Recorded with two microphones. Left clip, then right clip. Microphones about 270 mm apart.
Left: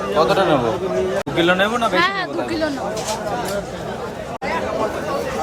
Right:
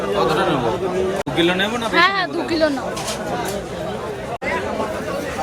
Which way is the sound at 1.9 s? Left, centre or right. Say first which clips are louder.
Right 2 dB; centre.